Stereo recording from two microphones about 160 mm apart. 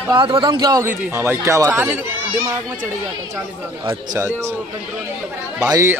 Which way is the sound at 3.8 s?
20° right (ahead or behind).